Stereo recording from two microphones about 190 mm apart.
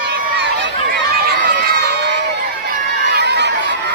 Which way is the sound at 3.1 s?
60° right (ahead or behind).